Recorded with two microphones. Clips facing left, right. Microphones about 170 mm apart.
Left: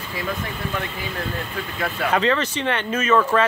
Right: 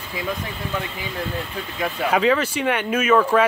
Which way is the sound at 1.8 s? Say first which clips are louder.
Right 1 dB; 10° right (ahead or behind).